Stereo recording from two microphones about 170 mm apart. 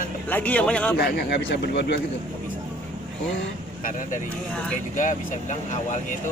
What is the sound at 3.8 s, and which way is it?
Speech, 50° left (ahead or behind).